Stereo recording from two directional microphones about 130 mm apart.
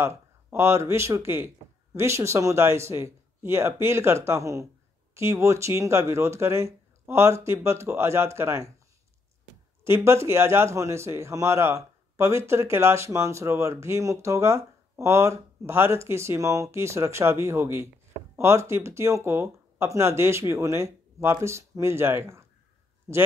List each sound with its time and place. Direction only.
0.0 s a man's voice: 20° right (ahead or behind)
9.8 s a man's voice: 20° right (ahead or behind)